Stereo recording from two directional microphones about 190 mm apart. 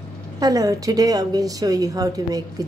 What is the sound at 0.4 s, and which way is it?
A woman's voice, 20° right (ahead or behind).